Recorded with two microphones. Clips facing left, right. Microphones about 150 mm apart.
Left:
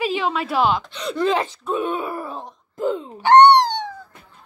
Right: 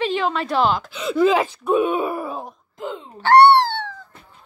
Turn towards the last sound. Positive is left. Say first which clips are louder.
# even
turn(degrees=15)  # may be behind; listen again after turning